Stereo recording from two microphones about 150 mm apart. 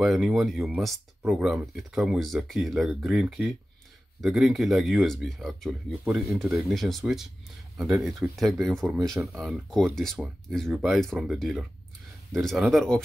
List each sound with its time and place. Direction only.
0.0 s speech: centre (ahead or behind)